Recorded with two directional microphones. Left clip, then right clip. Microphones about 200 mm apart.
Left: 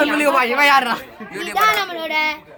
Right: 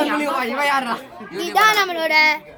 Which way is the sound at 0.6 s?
55° left (ahead or behind).